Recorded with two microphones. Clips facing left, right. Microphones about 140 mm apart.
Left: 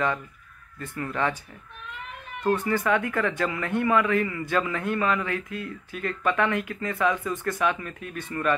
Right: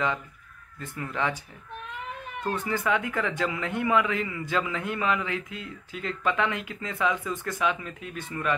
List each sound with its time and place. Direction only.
0.7 s a man's voice: 10° right (ahead or behind)
2.6 s a man's voice: 10° right (ahead or behind)